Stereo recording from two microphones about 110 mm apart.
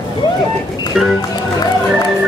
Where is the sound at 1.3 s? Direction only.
40° left (ahead or behind).